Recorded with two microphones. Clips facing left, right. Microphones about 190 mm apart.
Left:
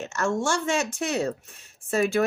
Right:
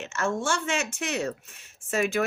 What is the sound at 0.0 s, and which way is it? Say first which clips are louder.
Speech: left 2 dB; 40° left (ahead or behind).